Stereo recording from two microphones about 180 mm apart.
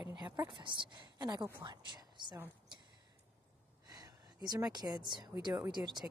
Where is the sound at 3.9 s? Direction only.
20° right (ahead or behind).